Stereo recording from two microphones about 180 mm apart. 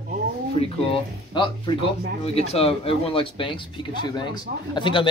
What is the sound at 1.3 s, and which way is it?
Speech, 25° left (ahead or behind).